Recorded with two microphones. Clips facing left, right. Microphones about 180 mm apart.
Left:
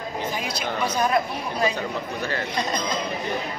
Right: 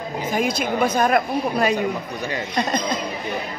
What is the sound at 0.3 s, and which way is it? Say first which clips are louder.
A woman's voice: right 11 dB; 50° right (ahead or behind).